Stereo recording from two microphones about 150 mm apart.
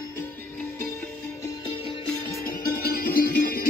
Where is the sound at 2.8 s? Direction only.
90° left.